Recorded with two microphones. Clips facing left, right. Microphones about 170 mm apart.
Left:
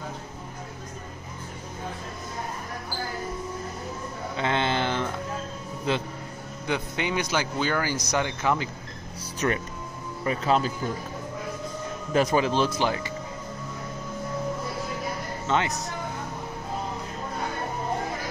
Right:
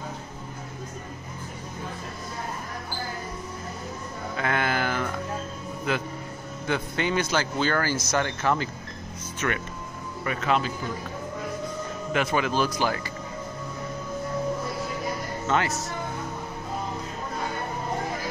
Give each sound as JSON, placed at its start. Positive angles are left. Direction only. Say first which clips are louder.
{"t": 4.4, "sound": "a sound", "louder": "left 1 dB", "side_deg": 25}
{"t": 5.9, "sound": "speech", "louder": "left 1 dB", "side_deg": 30}
{"t": 6.7, "sound": "speech", "louder": "right 1 dB", "side_deg": 15}
{"t": 9.4, "sound": "speech", "louder": "left 3 dB", "side_deg": 35}
{"t": 12.1, "sound": "speech", "louder": "left 3 dB", "side_deg": 35}
{"t": 15.4, "sound": "speech", "louder": "even", "side_deg": 20}